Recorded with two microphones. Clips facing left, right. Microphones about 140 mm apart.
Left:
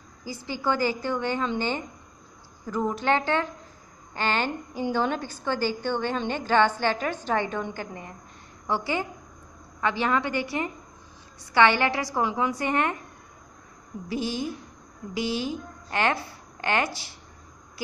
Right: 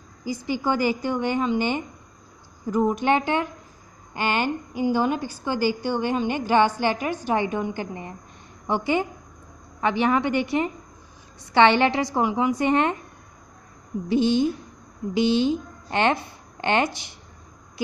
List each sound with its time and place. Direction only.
0.2 s a woman's voice: 15° right (ahead or behind)
14.0 s a woman's voice: 25° right (ahead or behind)